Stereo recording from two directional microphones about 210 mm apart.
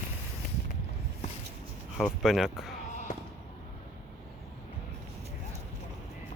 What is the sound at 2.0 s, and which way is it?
Speech, centre (ahead or behind).